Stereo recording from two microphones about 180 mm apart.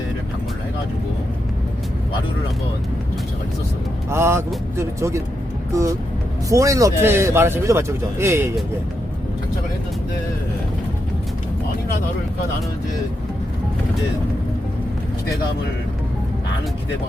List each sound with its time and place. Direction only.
4.1 s speech: 15° right (ahead or behind)